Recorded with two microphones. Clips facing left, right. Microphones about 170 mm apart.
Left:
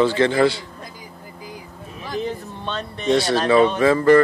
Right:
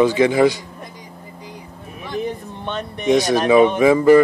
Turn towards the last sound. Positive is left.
turn(degrees=-10)  # may be behind; listen again after turning